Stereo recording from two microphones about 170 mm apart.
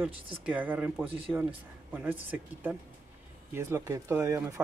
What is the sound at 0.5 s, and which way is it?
Speech, 10° right (ahead or behind).